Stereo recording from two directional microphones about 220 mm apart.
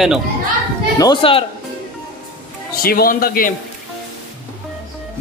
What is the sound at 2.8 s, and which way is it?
Speech, 40° left (ahead or behind).